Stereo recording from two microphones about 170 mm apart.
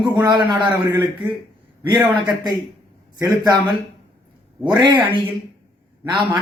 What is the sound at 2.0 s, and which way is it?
A man's voice, 25° right (ahead or behind).